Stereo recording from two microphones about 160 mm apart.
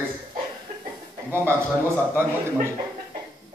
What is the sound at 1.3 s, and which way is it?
Speech, 15° right (ahead or behind).